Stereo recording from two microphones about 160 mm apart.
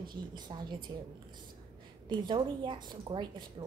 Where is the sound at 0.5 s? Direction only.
30° right (ahead or behind).